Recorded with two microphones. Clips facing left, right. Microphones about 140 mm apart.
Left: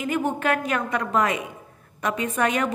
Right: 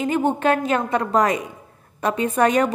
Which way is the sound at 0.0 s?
30° right (ahead or behind).